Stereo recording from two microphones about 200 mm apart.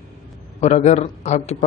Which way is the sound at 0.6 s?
35° left (ahead or behind).